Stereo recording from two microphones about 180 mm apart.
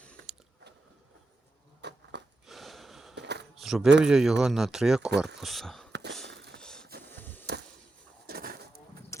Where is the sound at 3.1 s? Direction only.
70° right (ahead or behind).